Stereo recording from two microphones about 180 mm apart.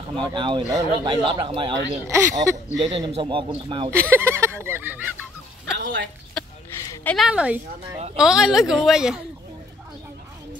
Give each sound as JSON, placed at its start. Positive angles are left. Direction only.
{"t": 0.1, "sound": "speech", "side_deg": -25}
{"t": 2.0, "sound": "speech", "side_deg": -15}
{"t": 3.9, "sound": "speech", "side_deg": -15}
{"t": 5.8, "sound": "a sound", "side_deg": -90}
{"t": 7.2, "sound": "a woman's voice", "side_deg": -5}